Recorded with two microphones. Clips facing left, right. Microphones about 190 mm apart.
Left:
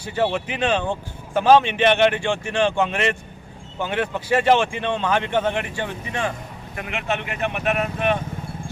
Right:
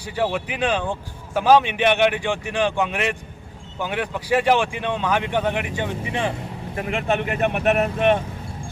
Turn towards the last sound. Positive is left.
turn(degrees=-40)  # may be behind; listen again after turning